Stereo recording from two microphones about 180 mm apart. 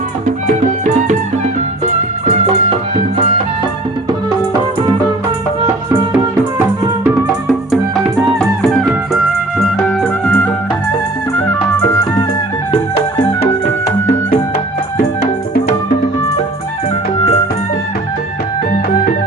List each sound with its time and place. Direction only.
1.8 s music: 35° right (ahead or behind)
8.4 s music: centre (ahead or behind)
10.0 s music: 5° left (ahead or behind)